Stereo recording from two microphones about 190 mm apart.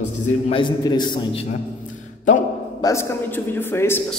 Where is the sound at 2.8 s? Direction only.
10° left (ahead or behind).